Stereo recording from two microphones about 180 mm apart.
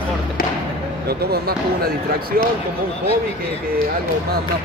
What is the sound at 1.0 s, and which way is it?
Speech, 60° right (ahead or behind).